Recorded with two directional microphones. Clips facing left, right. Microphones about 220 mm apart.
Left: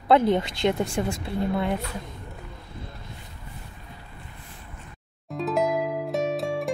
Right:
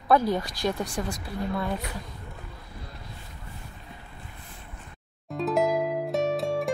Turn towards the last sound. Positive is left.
turn(degrees=0)  # may be behind; listen again after turning